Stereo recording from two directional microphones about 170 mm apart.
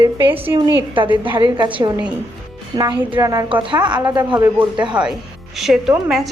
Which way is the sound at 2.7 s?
20° right (ahead or behind).